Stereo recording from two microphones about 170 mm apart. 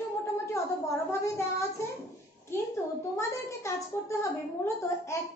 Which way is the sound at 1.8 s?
15° left (ahead or behind).